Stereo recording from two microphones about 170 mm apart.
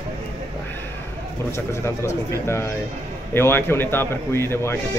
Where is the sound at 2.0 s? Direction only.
15° left (ahead or behind).